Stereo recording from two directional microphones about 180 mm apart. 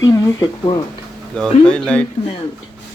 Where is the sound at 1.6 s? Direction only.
5° left (ahead or behind).